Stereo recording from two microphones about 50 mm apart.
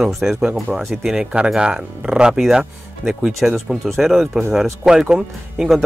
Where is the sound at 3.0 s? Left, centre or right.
Centre.